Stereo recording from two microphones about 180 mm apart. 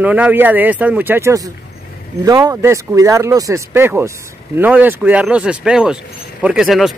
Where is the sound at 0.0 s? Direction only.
10° right (ahead or behind).